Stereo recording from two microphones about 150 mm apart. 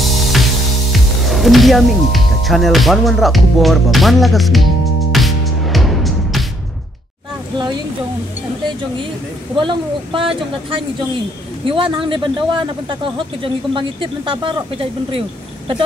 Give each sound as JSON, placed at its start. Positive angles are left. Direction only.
{"t": 0.0, "sound": "music", "side_deg": 0}
{"t": 1.2, "sound": "speech", "side_deg": 0}
{"t": 5.1, "sound": "music", "side_deg": 0}
{"t": 9.6, "sound": "speech", "side_deg": -35}
{"t": 11.6, "sound": "speech", "side_deg": -35}